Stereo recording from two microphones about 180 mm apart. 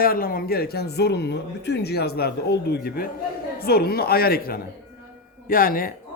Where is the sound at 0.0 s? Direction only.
55° left (ahead or behind).